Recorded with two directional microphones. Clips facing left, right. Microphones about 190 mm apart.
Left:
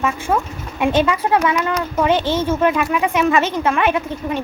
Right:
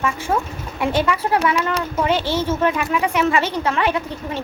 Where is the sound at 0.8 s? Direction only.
15° left (ahead or behind).